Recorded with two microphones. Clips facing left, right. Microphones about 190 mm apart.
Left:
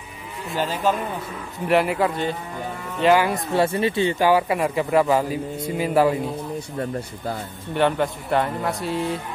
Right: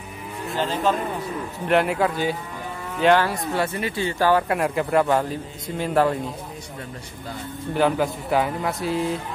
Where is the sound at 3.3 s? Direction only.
25° left (ahead or behind).